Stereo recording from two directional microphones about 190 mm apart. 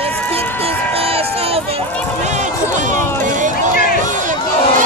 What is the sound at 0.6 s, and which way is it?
Run, 30° right (ahead or behind).